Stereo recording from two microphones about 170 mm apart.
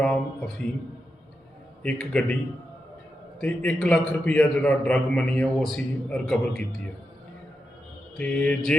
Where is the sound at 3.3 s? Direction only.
5° left (ahead or behind).